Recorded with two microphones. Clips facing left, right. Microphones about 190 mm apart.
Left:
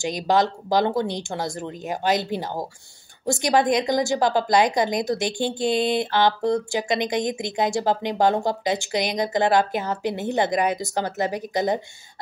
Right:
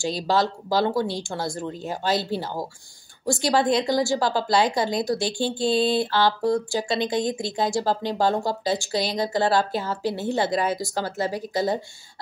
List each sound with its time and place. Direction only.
0.0 s a woman's voice: 20° left (ahead or behind)